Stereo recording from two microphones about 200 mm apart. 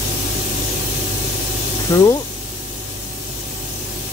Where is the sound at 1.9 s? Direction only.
15° left (ahead or behind).